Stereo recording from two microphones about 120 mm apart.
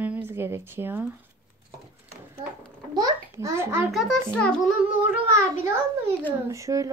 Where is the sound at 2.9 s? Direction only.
30° right (ahead or behind).